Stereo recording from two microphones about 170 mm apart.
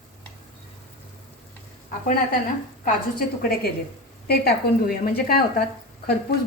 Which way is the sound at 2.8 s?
60° left (ahead or behind).